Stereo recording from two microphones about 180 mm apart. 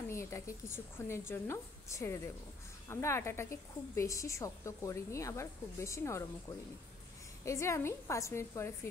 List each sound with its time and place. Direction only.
0.1 s a woman's voice: 15° left (ahead or behind)
7.4 s a woman's voice: 15° left (ahead or behind)